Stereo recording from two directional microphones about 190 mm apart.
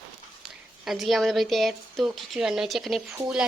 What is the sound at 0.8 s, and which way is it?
Speech, centre (ahead or behind).